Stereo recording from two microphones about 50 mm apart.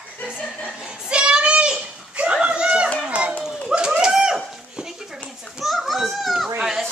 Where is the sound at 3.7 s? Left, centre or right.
Centre.